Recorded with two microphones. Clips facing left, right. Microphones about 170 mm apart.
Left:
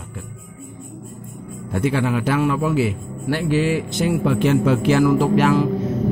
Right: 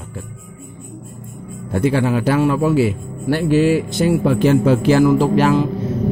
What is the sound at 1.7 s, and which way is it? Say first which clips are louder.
Speech: right 3 dB; 35° right (ahead or behind).